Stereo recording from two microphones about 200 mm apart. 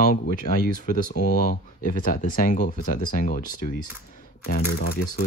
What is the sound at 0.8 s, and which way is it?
Speech, 40° left (ahead or behind).